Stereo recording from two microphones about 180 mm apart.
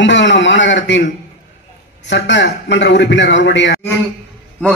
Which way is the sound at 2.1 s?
80° left.